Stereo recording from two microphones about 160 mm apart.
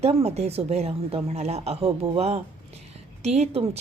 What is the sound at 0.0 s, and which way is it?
A woman's voice, 40° right (ahead or behind).